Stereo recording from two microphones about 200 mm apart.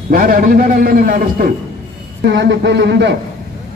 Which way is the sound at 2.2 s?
65° right (ahead or behind).